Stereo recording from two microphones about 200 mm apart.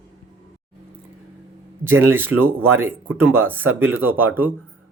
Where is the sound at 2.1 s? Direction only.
10° right (ahead or behind).